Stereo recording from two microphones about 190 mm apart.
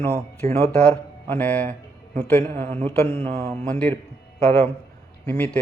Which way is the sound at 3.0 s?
30° right (ahead or behind).